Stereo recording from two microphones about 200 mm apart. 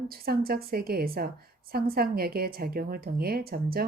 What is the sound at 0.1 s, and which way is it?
Speech, 50° right (ahead or behind).